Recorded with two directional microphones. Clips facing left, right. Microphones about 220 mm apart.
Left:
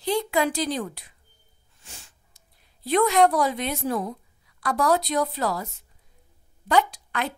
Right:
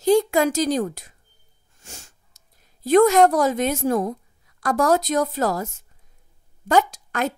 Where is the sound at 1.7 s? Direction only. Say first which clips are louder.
Right 5 dB; 45° right (ahead or behind).